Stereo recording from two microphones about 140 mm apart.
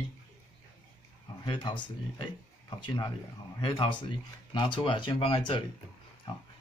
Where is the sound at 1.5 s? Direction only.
35° left (ahead or behind).